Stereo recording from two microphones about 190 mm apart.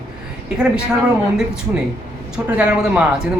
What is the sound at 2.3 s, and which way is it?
Speech, 5° right (ahead or behind).